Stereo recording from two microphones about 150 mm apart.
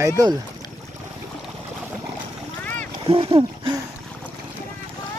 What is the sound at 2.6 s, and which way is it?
Boat, 10° left (ahead or behind).